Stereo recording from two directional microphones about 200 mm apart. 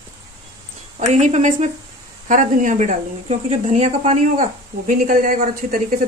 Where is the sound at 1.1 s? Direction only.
35° right (ahead or behind).